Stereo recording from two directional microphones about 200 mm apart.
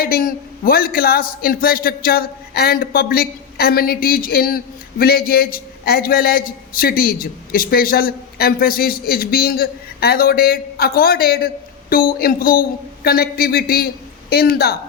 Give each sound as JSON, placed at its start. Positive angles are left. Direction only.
{"t": 0.0, "sound": "a man's voice", "side_deg": 45}